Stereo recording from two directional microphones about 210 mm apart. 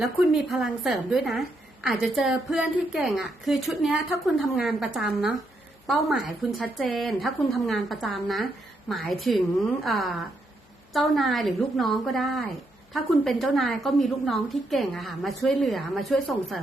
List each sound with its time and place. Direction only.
0.0 s a woman's voice: centre (ahead or behind)